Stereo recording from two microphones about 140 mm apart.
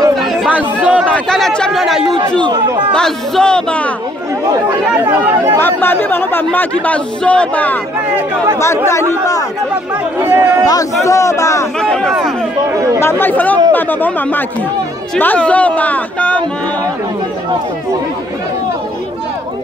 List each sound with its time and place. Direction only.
0.2 s chatter: centre (ahead or behind)
0.5 s chatter: 10° right (ahead or behind)
1.0 s speech: 5° left (ahead or behind)
2.4 s speech: 30° right (ahead or behind)
2.9 s speech: 5° left (ahead or behind)
4.9 s speech: 10° right (ahead or behind)
5.6 s speech: 15° left (ahead or behind)
10.1 s speech: 15° right (ahead or behind)
10.7 s a man's voice: 25° left (ahead or behind)
11.8 s speech: 5° left (ahead or behind)
13.0 s speech: 15° left (ahead or behind)